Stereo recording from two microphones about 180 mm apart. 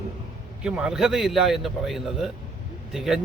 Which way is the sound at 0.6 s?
5° right (ahead or behind).